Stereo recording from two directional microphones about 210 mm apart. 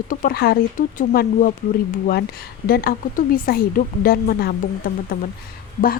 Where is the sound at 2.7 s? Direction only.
45° left (ahead or behind).